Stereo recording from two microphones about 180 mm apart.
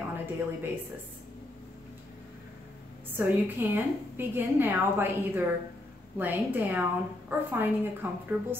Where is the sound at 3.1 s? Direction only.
10° right (ahead or behind).